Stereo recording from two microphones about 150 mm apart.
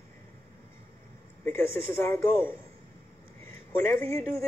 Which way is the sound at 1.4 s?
15° left (ahead or behind).